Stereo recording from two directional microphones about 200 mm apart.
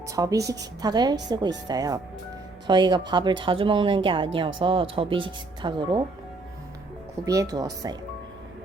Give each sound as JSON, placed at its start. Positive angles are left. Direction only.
{"t": 0.1, "sound": "a woman's voice", "side_deg": -15}
{"t": 7.3, "sound": "a woman's voice", "side_deg": -15}